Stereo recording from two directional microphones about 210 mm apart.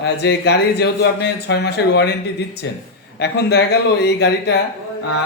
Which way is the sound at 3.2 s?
55° left (ahead or behind).